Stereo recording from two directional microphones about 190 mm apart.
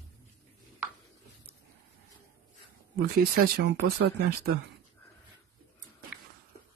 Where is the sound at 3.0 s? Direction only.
55° right (ahead or behind).